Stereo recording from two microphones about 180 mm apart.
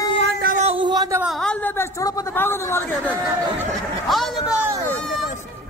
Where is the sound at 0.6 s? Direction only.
30° right (ahead or behind).